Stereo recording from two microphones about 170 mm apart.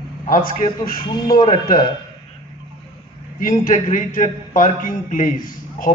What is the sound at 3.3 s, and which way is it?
A man's voice, 55° left (ahead or behind).